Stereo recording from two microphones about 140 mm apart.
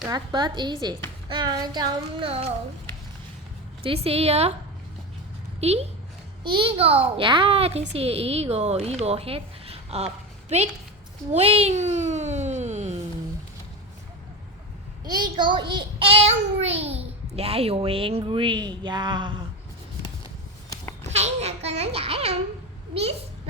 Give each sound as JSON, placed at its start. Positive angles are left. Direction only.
{"t": 0.1, "sound": "child singing", "side_deg": -30}
{"t": 3.8, "sound": "a child's voice", "side_deg": -45}
{"t": 5.5, "sound": "a child's voice", "side_deg": -50}
{"t": 6.4, "sound": "a child's voice", "side_deg": -35}
{"t": 11.3, "sound": "a child's voice", "side_deg": -50}
{"t": 15.0, "sound": "a child's voice", "side_deg": -30}
{"t": 21.1, "sound": "a sound", "side_deg": -50}